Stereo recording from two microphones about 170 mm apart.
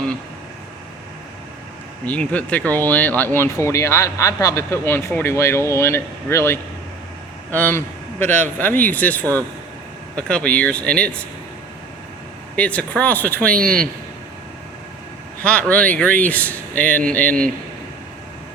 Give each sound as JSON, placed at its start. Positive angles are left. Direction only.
{"t": 2.0, "sound": "a man's voice", "side_deg": 10}
{"t": 12.5, "sound": "speech", "side_deg": 5}
{"t": 13.6, "sound": "speech", "side_deg": -55}
{"t": 15.4, "sound": "speech", "side_deg": 5}